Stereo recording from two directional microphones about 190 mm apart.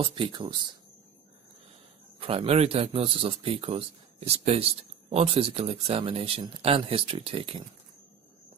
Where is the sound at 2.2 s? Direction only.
30° right (ahead or behind).